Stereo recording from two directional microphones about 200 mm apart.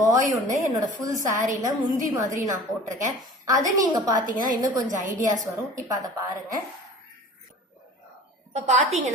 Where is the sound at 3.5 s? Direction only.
20° right (ahead or behind).